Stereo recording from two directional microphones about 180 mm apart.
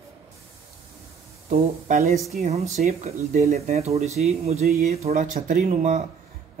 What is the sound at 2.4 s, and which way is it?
A man's voice, 40° right (ahead or behind).